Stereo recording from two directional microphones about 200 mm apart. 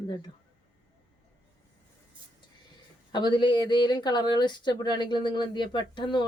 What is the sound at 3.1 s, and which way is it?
Speech, 20° left (ahead or behind).